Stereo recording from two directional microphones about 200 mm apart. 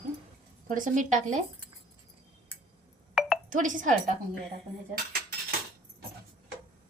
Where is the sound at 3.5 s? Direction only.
40° right (ahead or behind).